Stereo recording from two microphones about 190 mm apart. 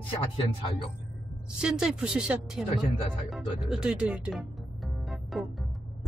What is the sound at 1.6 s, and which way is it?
Speech, 5° right (ahead or behind).